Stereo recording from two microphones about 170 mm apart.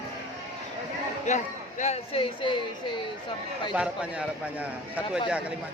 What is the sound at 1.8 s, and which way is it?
Speech, 35° left (ahead or behind).